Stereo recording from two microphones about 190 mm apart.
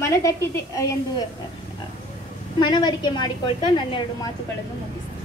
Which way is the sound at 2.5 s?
25° left (ahead or behind).